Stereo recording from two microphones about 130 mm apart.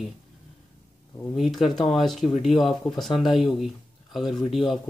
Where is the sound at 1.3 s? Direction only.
Centre (ahead or behind).